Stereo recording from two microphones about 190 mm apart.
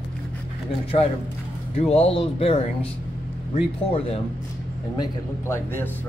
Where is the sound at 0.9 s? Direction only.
35° left (ahead or behind).